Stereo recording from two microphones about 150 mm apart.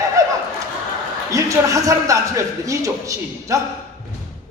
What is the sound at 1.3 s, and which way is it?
A man's voice, 20° right (ahead or behind).